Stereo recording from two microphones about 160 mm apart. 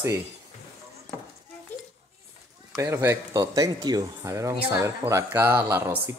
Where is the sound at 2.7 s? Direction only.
15° right (ahead or behind).